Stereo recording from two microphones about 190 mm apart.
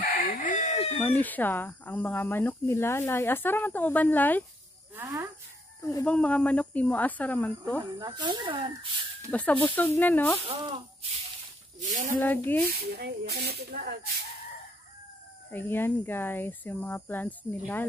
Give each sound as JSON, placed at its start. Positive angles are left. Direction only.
{"t": 0.0, "sound": "crowing", "side_deg": 50}
{"t": 1.0, "sound": "speech", "side_deg": 10}
{"t": 4.9, "sound": "speech", "side_deg": -15}
{"t": 6.0, "sound": "speech", "side_deg": 5}
{"t": 8.0, "sound": "speech", "side_deg": -25}
{"t": 9.3, "sound": "speech", "side_deg": 10}
{"t": 10.4, "sound": "speech", "side_deg": -25}
{"t": 11.8, "sound": "speech", "side_deg": -40}
{"t": 12.9, "sound": "speech", "side_deg": -60}
{"t": 15.5, "sound": "speech", "side_deg": 10}